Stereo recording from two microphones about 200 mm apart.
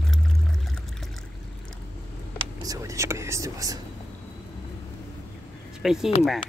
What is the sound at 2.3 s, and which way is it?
Speech, 20° right (ahead or behind).